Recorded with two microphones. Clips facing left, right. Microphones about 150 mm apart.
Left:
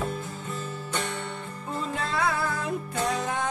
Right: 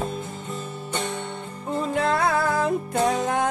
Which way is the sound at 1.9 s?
70° right (ahead or behind).